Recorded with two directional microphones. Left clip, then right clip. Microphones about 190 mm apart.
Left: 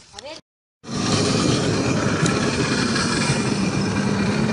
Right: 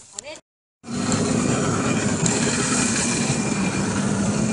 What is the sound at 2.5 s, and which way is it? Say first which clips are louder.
Vehicle: left 1 dB; centre (ahead or behind).